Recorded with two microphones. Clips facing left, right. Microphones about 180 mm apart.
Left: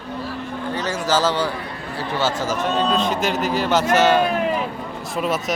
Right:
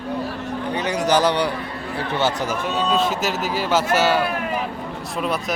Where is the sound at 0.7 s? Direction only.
15° right (ahead or behind).